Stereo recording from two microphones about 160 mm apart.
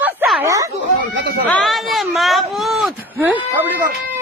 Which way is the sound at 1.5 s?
5° left (ahead or behind).